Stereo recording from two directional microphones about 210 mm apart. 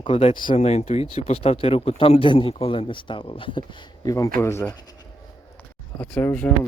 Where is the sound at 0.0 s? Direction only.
25° left (ahead or behind).